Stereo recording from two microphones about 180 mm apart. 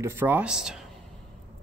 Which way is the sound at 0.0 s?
10° right (ahead or behind).